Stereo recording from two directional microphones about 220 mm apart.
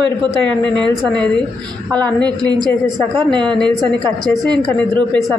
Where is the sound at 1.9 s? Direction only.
5° left (ahead or behind).